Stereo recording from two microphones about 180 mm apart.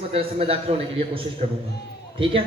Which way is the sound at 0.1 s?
35° right (ahead or behind).